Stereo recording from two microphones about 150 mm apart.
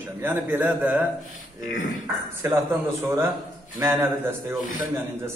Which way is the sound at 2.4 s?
20° right (ahead or behind).